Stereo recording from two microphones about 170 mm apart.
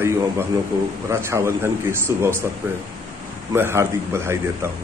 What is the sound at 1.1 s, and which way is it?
A man's voice, 15° right (ahead or behind).